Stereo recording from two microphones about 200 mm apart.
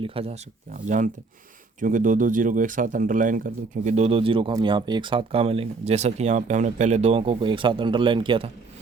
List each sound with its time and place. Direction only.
0.0 s speech: 30° right (ahead or behind)